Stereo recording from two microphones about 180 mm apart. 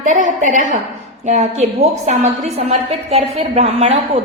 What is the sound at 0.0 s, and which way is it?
A woman's voice, 45° right (ahead or behind).